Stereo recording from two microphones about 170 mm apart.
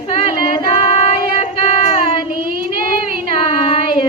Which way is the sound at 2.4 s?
55° right (ahead or behind).